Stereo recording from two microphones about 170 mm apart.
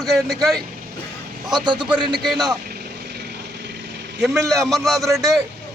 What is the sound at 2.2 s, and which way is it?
Speech, centre (ahead or behind).